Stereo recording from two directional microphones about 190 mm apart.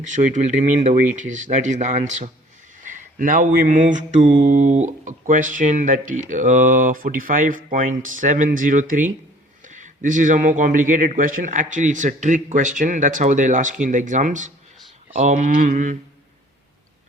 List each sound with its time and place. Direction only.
0.0 s speech: 40° right (ahead or behind)
2.8 s mantra: 45° right (ahead or behind)
9.6 s speech: 40° right (ahead or behind)
15.2 s mantra: 40° right (ahead or behind)